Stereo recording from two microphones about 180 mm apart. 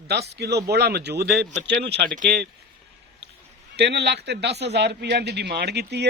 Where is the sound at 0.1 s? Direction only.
65° right (ahead or behind).